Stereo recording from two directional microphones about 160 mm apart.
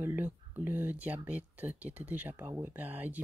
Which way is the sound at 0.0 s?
15° right (ahead or behind).